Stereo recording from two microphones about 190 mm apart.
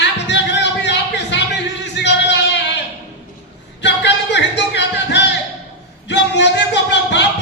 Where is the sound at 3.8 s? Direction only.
65° left (ahead or behind).